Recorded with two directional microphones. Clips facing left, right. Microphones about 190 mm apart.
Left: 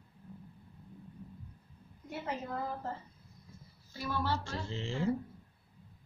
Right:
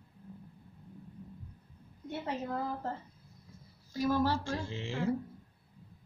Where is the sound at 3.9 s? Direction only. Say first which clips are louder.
Right 6 dB; 40° right (ahead or behind).